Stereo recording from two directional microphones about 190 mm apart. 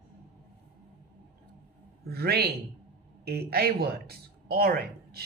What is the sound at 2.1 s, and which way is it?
A man's voice, 55° right (ahead or behind).